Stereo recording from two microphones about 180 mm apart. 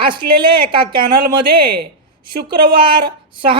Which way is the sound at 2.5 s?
30° right (ahead or behind).